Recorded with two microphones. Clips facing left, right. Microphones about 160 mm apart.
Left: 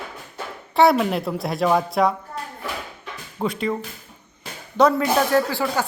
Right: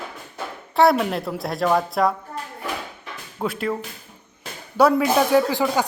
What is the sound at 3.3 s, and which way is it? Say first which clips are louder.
Speech: left 1 dB; 5° right (ahead or behind).